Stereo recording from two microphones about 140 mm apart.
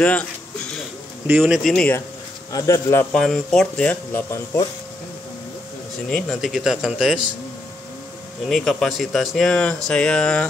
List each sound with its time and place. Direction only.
0.0 s a sound: 10° left (ahead or behind)
1.4 s speech: centre (ahead or behind)
2.5 s speech: 20° left (ahead or behind)
3.1 s speech: 5° left (ahead or behind)
6.0 s speech: 5° left (ahead or behind)
8.5 s speech: centre (ahead or behind)